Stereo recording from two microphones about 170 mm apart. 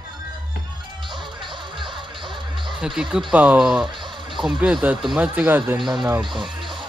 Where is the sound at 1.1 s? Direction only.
30° right (ahead or behind).